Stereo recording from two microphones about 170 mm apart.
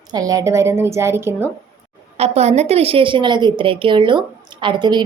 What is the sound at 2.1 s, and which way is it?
A woman's voice, 40° right (ahead or behind).